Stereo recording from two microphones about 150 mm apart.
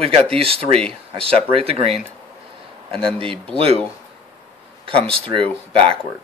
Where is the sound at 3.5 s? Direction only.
40° right (ahead or behind).